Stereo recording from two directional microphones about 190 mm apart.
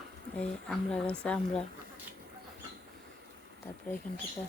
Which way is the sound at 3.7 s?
15° left (ahead or behind).